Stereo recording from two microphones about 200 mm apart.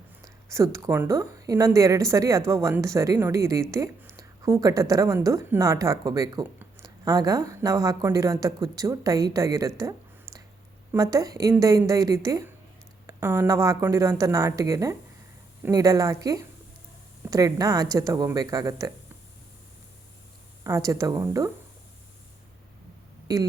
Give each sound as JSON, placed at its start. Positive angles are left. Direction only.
{"t": 0.5, "sound": "a woman's voice", "side_deg": -15}
{"t": 10.9, "sound": "a woman's voice", "side_deg": -15}
{"t": 20.7, "sound": "a woman's voice", "side_deg": -15}